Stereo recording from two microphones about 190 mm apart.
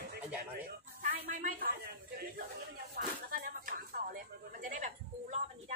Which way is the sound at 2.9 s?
50° right (ahead or behind).